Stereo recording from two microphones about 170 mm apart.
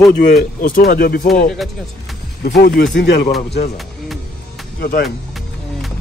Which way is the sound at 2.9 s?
80° left.